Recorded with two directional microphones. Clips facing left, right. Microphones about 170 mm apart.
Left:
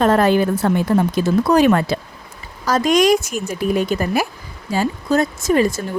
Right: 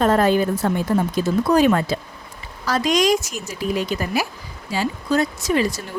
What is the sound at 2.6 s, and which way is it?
Speech, 45° left (ahead or behind).